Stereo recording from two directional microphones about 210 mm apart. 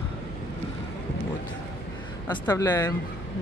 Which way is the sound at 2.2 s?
15° left (ahead or behind).